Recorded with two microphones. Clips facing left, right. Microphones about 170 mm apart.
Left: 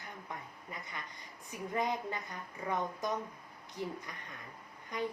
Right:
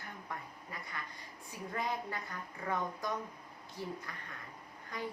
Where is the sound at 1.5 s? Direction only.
20° left (ahead or behind).